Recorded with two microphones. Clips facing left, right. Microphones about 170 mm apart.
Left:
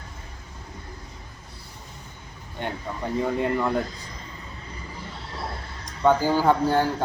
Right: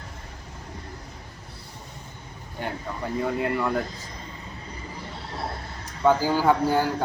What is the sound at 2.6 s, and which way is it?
A man's voice, centre (ahead or behind).